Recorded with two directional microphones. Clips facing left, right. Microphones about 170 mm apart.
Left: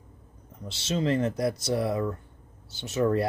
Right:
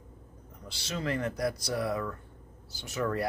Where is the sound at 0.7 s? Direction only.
25° left (ahead or behind).